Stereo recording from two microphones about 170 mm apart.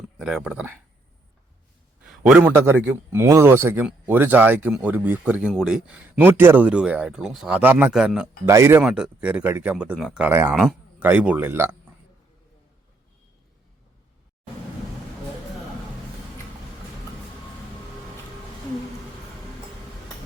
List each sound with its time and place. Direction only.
0.2 s a man's voice: 5° right (ahead or behind)
2.0 s a man's voice: 5° right (ahead or behind)
8.4 s a man's voice: 15° right (ahead or behind)
10.2 s a man's voice: 15° right (ahead or behind)
10.5 s a man's voice: centre (ahead or behind)